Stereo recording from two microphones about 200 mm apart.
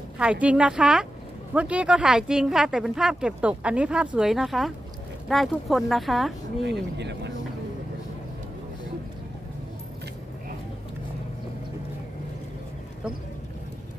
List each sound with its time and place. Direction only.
0.2 s speech: 5° right (ahead or behind)
6.6 s speech: 60° right (ahead or behind)